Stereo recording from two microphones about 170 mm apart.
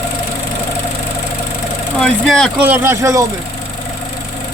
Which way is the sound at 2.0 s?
5° left (ahead or behind).